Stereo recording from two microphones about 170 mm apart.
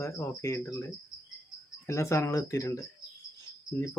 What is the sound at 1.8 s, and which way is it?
Speech, 15° left (ahead or behind).